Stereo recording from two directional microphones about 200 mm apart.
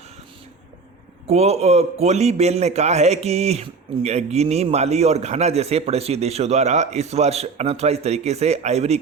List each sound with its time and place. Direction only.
1.3 s a man's voice: 30° right (ahead or behind)